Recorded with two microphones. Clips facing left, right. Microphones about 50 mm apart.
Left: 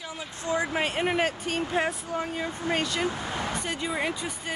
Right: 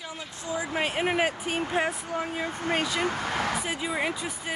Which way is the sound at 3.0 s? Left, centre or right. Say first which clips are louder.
Right 2 dB; right.